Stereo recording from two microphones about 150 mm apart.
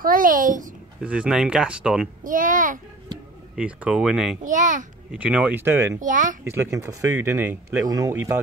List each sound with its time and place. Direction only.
0.0 s a child's voice: 65° right (ahead or behind)
1.0 s speech: 10° right (ahead or behind)
2.2 s a child's voice: 65° right (ahead or behind)
3.5 s speech: 10° right (ahead or behind)
4.4 s a child's voice: 55° right (ahead or behind)
5.1 s speech: 10° right (ahead or behind)
5.9 s a child's voice: 60° right (ahead or behind)
6.4 s speech: 20° right (ahead or behind)